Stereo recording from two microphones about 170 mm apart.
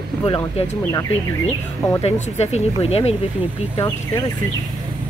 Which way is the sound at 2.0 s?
40° left (ahead or behind).